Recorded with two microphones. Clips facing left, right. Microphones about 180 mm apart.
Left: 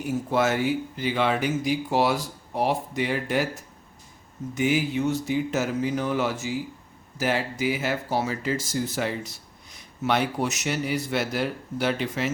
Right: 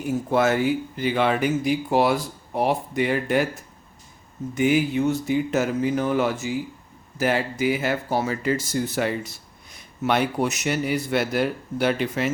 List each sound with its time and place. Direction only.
0.3 s speech: 55° right (ahead or behind)